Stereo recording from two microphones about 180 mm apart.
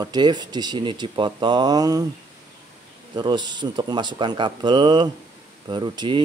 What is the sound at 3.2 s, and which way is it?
Speech, 25° right (ahead or behind).